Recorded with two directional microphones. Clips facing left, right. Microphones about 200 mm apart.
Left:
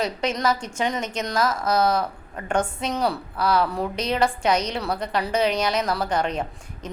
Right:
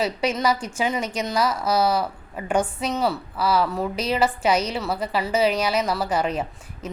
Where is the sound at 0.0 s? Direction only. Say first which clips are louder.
Right 1 dB; 5° right (ahead or behind).